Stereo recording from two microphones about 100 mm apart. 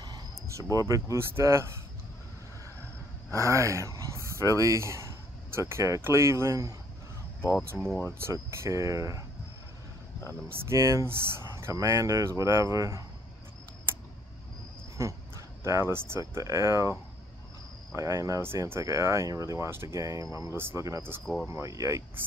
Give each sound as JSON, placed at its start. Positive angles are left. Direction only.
{"t": 0.5, "sound": "speech", "side_deg": -35}
{"t": 3.3, "sound": "speech", "side_deg": -30}
{"t": 8.1, "sound": "speech", "side_deg": -25}
{"t": 10.6, "sound": "speech", "side_deg": -30}
{"t": 15.0, "sound": "speech", "side_deg": -30}
{"t": 17.9, "sound": "speech", "side_deg": -35}